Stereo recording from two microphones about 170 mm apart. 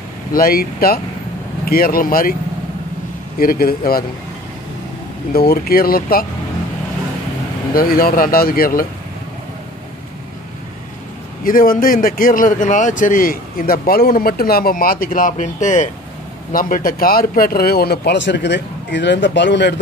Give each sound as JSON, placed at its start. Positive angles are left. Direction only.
{"t": 0.3, "sound": "speech", "side_deg": 60}
{"t": 3.3, "sound": "speech", "side_deg": 60}
{"t": 5.3, "sound": "speech", "side_deg": 65}
{"t": 7.7, "sound": "speech", "side_deg": 60}
{"t": 11.4, "sound": "speech", "side_deg": 55}